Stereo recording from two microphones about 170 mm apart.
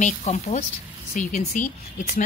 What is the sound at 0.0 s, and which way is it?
Speech, 45° left (ahead or behind).